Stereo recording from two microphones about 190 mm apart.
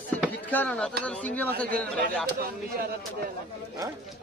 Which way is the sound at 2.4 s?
55° right (ahead or behind).